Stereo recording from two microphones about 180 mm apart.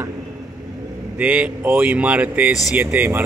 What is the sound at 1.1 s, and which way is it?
Speech, 10° right (ahead or behind).